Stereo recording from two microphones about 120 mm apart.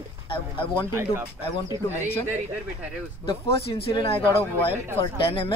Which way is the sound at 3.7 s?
50° left (ahead or behind).